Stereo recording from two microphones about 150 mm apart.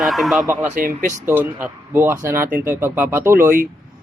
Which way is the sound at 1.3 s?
15° right (ahead or behind).